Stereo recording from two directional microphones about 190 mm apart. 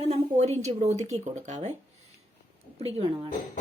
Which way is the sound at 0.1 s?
35° right (ahead or behind).